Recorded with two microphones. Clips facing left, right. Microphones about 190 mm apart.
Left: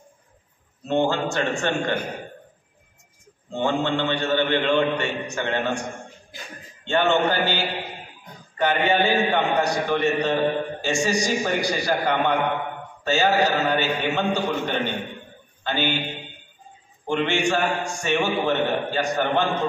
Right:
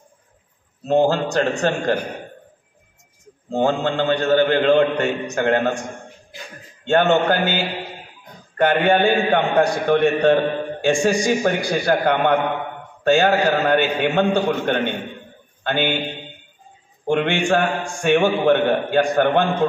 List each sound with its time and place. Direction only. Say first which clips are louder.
0.8 s a man's voice: right 5 dB; 40° right (ahead or behind)
3.4 s a man's voice: right 4 dB; 40° right (ahead or behind)
6.9 s a man's voice: right 4 dB; 50° right (ahead or behind)
8.5 s a man's voice: right 4 dB; 55° right (ahead or behind)
17.0 s a man's voice: right 3 dB; 55° right (ahead or behind)